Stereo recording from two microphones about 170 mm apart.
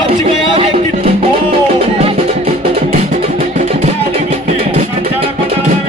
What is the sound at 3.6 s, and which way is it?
Music, 40° right (ahead or behind).